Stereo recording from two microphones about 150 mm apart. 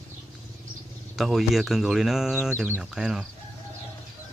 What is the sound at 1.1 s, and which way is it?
Speech, centre (ahead or behind).